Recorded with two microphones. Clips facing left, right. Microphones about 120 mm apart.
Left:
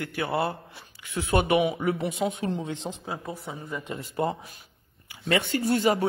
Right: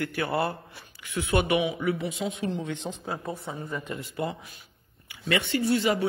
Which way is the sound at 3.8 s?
35° left (ahead or behind).